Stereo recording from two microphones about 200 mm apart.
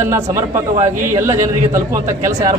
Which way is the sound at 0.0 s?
15° right (ahead or behind).